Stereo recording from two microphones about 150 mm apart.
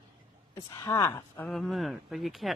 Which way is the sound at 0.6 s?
25° left (ahead or behind).